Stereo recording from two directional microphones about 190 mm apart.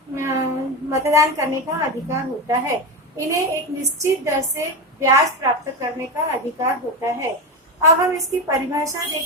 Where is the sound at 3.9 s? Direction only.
15° right (ahead or behind).